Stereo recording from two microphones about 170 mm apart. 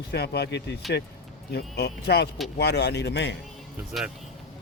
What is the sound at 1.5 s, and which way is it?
Speech, 70° left (ahead or behind).